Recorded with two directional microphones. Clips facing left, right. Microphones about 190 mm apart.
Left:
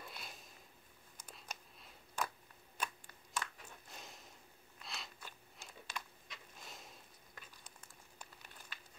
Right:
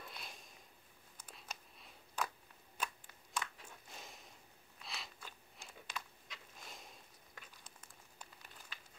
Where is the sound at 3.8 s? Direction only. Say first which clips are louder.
Even; centre (ahead or behind).